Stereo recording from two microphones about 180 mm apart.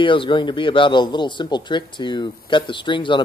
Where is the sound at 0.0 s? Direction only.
30° left (ahead or behind).